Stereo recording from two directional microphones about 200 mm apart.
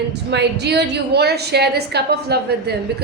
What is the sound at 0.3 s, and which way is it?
A woman's voice, 60° right (ahead or behind).